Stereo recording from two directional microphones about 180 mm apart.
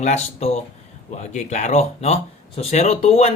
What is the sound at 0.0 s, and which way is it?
Speech, 40° left (ahead or behind).